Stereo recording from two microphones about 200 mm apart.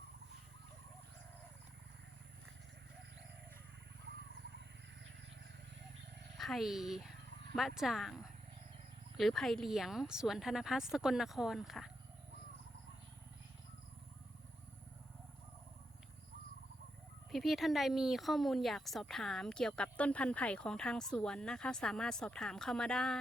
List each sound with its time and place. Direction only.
6.3 s speech: centre (ahead or behind)
17.3 s speech: centre (ahead or behind)